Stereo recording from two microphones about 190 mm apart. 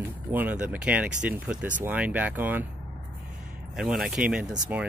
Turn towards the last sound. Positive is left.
turn(degrees=-10)  # may be behind; listen again after turning